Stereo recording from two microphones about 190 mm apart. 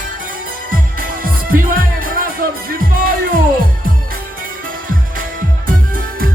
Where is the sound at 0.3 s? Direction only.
45° right (ahead or behind).